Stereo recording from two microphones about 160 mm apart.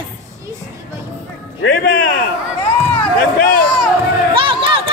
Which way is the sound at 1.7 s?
60° left (ahead or behind).